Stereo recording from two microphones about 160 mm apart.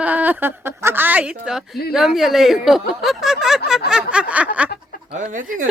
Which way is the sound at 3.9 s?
5° right (ahead or behind).